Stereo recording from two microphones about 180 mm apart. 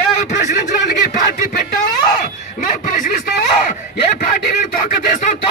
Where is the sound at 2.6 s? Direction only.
45° left (ahead or behind).